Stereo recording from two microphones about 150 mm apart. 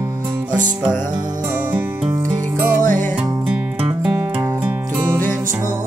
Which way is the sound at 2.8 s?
60° right (ahead or behind).